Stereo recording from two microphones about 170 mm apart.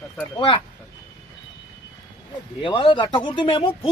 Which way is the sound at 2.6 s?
30° left (ahead or behind).